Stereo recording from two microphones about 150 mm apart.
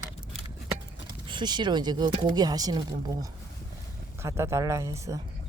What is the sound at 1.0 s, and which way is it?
Speech, 30° right (ahead or behind).